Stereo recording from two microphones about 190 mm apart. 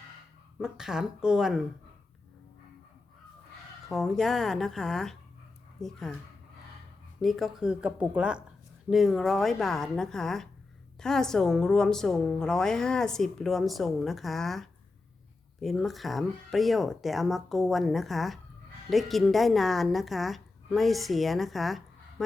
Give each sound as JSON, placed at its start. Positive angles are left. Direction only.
{"t": 0.6, "sound": "a woman's voice", "side_deg": -5}
{"t": 3.8, "sound": "a woman's voice", "side_deg": 0}
{"t": 7.2, "sound": "a woman's voice", "side_deg": 0}